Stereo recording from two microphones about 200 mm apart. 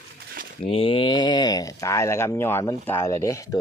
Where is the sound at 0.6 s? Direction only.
30° left (ahead or behind).